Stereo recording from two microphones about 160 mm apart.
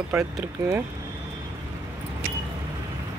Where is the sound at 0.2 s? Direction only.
5° right (ahead or behind).